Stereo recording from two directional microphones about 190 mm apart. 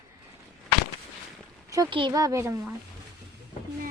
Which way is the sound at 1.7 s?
20° right (ahead or behind).